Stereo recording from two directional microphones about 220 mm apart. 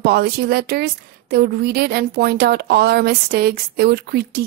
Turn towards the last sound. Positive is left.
turn(degrees=-45)  # may be behind; listen again after turning